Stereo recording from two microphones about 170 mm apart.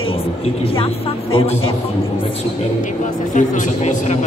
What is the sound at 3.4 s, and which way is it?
Speech, 45° left (ahead or behind).